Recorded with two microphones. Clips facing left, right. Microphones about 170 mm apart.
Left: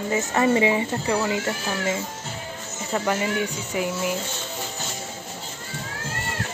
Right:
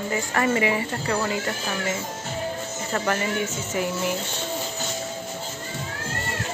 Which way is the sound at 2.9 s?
15° left (ahead or behind).